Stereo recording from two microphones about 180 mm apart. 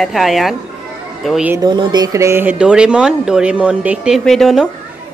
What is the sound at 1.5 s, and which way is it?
Speech, 25° right (ahead or behind).